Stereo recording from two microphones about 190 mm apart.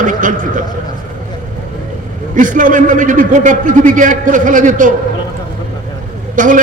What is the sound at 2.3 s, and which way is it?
A man's voice, 45° right (ahead or behind).